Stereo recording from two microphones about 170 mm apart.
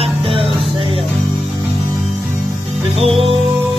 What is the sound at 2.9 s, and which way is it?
Music, 35° right (ahead or behind).